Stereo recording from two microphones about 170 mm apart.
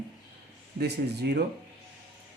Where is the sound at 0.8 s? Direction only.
75° right (ahead or behind).